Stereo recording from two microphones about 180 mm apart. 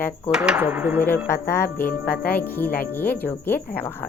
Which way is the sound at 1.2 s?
15° left (ahead or behind).